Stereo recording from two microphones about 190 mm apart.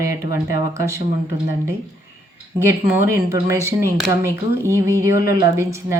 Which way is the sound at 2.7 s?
15° right (ahead or behind).